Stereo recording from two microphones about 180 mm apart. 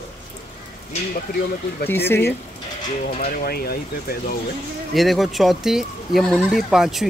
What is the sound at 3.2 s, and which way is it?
Speech, 50° left (ahead or behind).